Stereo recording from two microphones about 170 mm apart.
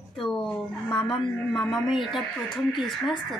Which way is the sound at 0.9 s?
Centre (ahead or behind).